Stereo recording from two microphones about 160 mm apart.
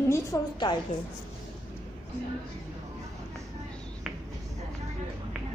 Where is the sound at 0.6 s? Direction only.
30° left (ahead or behind).